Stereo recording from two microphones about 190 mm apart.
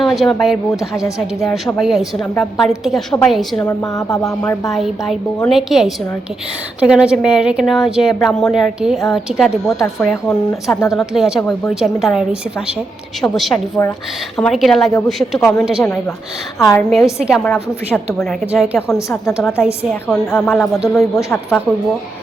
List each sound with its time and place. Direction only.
0.0 s a woman's voice: centre (ahead or behind); by 4.5 s 20° left (ahead or behind)
4.6 s a woman's voice: centre (ahead or behind)
13.8 s a woman's voice: 10° left (ahead or behind)
14.3 s a woman's voice: centre (ahead or behind)
15.8 s a woman's voice: 15° left (ahead or behind)
16.9 s a woman's voice: centre (ahead or behind)
17.4 s a woman's voice: 10° left (ahead or behind)
18.9 s a woman's voice: 15° left (ahead or behind); by 21.3 s centre (ahead or behind)